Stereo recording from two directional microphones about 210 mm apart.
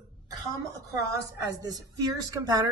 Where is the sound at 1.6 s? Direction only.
15° right (ahead or behind).